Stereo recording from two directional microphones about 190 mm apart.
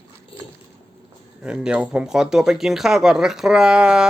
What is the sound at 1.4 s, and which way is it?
Speech, 5° right (ahead or behind).